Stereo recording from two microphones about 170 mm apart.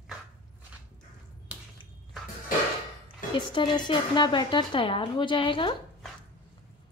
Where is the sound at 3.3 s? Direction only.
30° left (ahead or behind).